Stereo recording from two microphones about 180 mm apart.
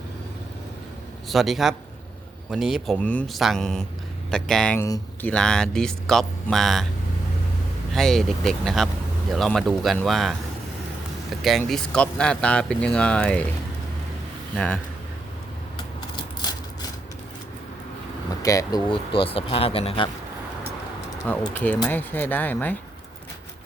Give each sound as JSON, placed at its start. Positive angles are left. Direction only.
{"t": 1.3, "sound": "speech", "side_deg": 0}
{"t": 7.9, "sound": "speech", "side_deg": 0}
{"t": 11.4, "sound": "speech", "side_deg": 0}
{"t": 14.5, "sound": "speech", "side_deg": 5}
{"t": 16.4, "sound": "a sound", "side_deg": 20}
{"t": 18.4, "sound": "speech", "side_deg": 20}
{"t": 21.5, "sound": "speech", "side_deg": 10}